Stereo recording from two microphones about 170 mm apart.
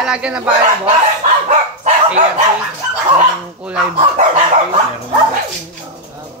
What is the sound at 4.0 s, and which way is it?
Dog, 35° right (ahead or behind).